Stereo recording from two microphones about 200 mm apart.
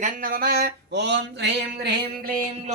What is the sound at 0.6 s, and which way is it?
Speech, 60° right (ahead or behind).